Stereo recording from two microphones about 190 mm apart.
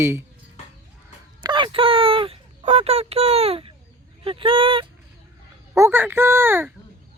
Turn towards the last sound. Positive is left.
turn(degrees=-10)  # may be behind; listen again after turning